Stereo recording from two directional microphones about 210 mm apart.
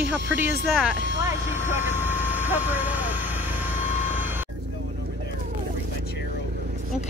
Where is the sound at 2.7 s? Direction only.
10° right (ahead or behind).